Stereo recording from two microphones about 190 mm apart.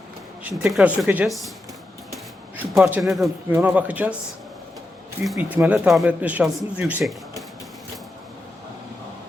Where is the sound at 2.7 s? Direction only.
5° right (ahead or behind).